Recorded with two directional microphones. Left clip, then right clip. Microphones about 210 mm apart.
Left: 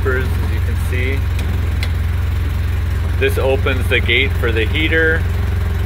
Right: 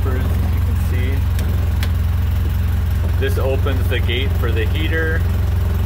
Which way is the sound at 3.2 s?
5° right (ahead or behind).